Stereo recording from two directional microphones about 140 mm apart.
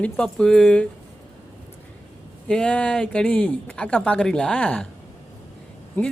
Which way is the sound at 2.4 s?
5° left (ahead or behind).